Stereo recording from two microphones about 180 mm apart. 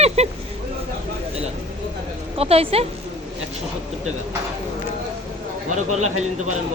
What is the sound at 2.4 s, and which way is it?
Speech, 35° right (ahead or behind).